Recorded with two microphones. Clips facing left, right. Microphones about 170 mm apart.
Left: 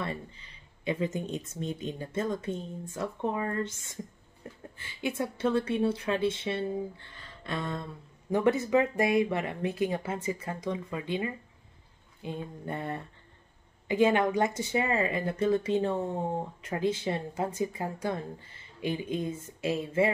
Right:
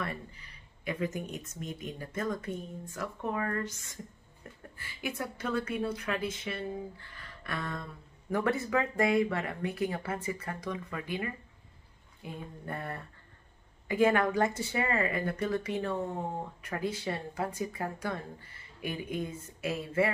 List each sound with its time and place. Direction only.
0.0 s speech: 25° left (ahead or behind)